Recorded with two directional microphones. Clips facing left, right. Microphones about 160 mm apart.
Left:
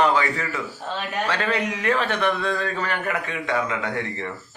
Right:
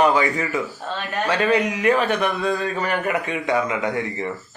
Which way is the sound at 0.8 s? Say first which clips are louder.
Right 1 dB; 15° left (ahead or behind).